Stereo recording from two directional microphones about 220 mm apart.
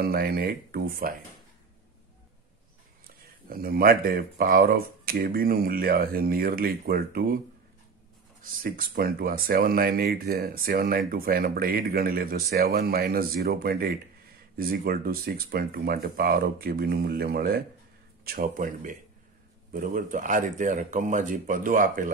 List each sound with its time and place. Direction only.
0.0 s speech: 45° right (ahead or behind)
3.4 s speech: 40° right (ahead or behind)
8.4 s speech: 40° right (ahead or behind)